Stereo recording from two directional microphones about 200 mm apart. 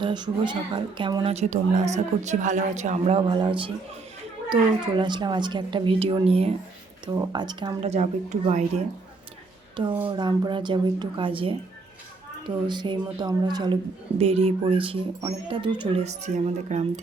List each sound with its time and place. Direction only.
0.0 s a man's voice: 20° right (ahead or behind)
7.9 s a man's voice: 35° right (ahead or behind)
10.0 s speech: 25° right (ahead or behind)
12.6 s speech: 20° right (ahead or behind)